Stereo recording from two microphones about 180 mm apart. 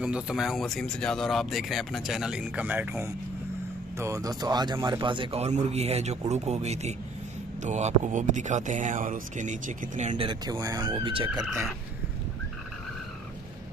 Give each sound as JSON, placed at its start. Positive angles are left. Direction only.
{"t": 0.0, "sound": "speech", "side_deg": -5}
{"t": 11.2, "sound": "speech", "side_deg": -10}